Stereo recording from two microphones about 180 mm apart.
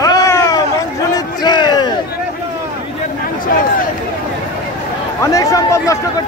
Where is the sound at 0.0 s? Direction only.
20° left (ahead or behind).